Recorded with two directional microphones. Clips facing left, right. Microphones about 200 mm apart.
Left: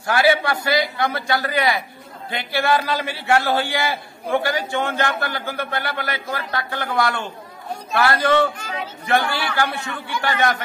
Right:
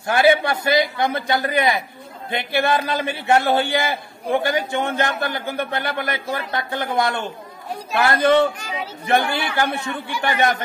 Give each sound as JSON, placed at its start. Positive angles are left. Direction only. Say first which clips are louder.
{"t": 0.0, "sound": "a man's voice", "louder": "right 2 dB", "side_deg": -20}